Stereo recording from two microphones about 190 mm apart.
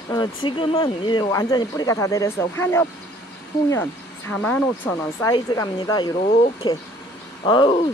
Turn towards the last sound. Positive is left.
turn(degrees=25)  # may be behind; listen again after turning